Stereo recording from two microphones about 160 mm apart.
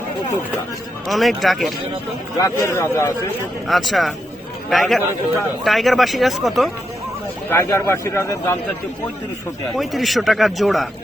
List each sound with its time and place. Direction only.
1.0 s a man's voice: centre (ahead or behind)
2.4 s a man's voice: 20° left (ahead or behind)
3.7 s a man's voice: centre (ahead or behind)
7.5 s a man's voice: 15° left (ahead or behind)
9.7 s a man's voice: centre (ahead or behind)